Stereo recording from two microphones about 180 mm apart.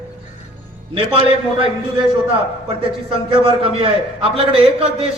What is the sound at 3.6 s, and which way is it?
A man's voice, 30° right (ahead or behind).